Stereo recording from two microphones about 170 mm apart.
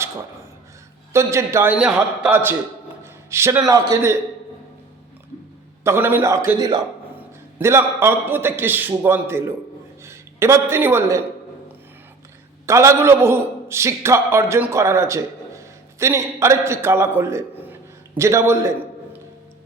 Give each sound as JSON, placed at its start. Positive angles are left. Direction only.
{"t": 1.1, "sound": "a man's voice", "side_deg": -15}
{"t": 3.0, "sound": "a sound", "side_deg": -15}
{"t": 3.7, "sound": "a man's voice", "side_deg": -20}
{"t": 5.8, "sound": "a man's voice", "side_deg": -15}
{"t": 12.6, "sound": "a man's voice", "side_deg": -15}